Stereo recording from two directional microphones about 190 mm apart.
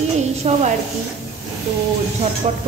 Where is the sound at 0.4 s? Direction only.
35° right (ahead or behind).